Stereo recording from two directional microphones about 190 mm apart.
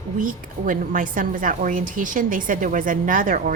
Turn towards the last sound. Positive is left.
turn(degrees=-45)  # may be behind; listen again after turning